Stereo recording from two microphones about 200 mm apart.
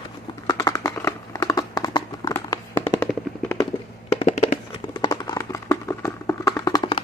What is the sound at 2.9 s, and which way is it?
Machine gun, 15° left (ahead or behind).